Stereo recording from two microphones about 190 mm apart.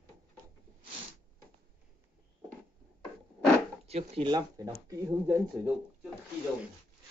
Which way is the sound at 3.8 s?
30° right (ahead or behind).